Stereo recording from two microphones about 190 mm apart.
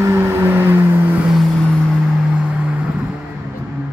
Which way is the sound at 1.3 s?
Centre (ahead or behind).